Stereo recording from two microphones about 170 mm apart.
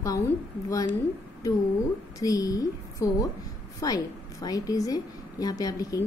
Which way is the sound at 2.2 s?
20° left (ahead or behind).